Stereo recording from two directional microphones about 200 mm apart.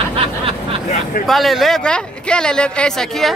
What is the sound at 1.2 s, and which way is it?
Speech, centre (ahead or behind).